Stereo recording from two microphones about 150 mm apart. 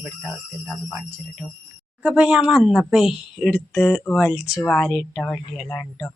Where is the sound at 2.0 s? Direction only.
Centre (ahead or behind).